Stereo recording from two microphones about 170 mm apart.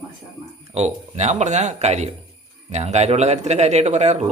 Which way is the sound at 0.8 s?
40° right (ahead or behind).